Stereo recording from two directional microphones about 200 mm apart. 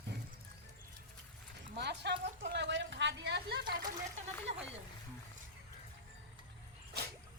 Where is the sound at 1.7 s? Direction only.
60° right (ahead or behind).